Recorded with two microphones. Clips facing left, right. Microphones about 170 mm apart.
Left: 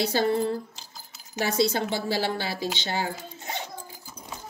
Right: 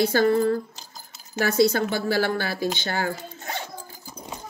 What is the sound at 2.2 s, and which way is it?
Speech, 50° right (ahead or behind).